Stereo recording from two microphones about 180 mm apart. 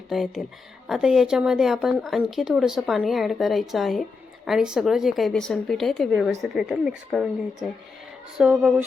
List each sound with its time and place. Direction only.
0.1 s speech: centre (ahead or behind)